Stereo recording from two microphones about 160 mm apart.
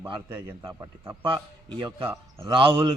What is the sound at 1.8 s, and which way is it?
A man's voice, 30° right (ahead or behind).